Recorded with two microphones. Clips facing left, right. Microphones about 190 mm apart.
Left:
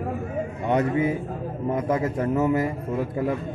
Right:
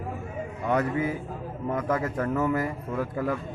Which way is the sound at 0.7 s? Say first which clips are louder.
Left 3 dB; 20° left (ahead or behind).